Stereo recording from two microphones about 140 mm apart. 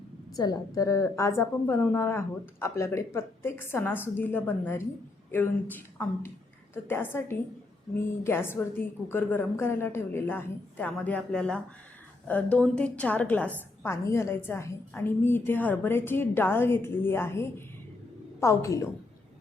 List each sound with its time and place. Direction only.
0.3 s a woman's voice: 25° left (ahead or behind)
6.0 s a woman's voice: 10° left (ahead or behind)